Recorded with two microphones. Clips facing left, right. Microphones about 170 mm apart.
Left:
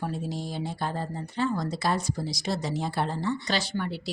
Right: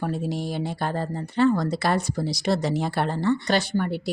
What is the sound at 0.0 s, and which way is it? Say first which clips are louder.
Speech: right 5 dB; 65° right (ahead or behind).